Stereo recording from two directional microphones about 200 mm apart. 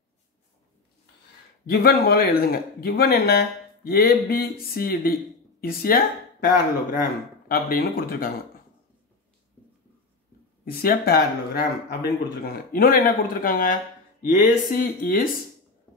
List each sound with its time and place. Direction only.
1.7 s a man's voice: 50° left (ahead or behind)
10.6 s a man's voice: 50° left (ahead or behind)